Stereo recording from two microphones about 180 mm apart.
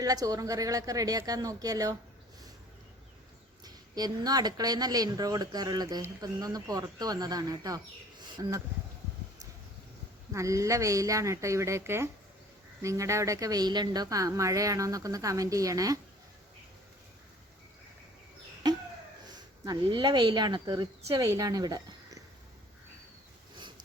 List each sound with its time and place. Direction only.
0.0 s speech: 20° right (ahead or behind)
3.6 s speech: 20° right (ahead or behind)
10.3 s speech: 15° right (ahead or behind)
18.6 s a sound: 20° right (ahead or behind)
19.2 s speech: 25° right (ahead or behind)